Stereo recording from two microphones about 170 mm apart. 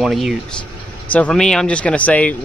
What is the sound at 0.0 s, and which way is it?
Speech, centre (ahead or behind).